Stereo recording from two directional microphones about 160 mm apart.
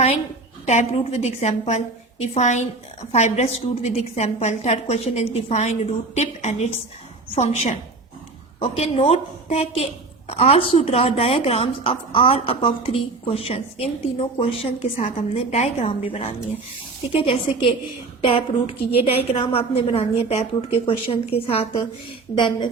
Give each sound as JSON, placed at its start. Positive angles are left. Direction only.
{"t": 0.6, "sound": "a woman's voice", "side_deg": 45}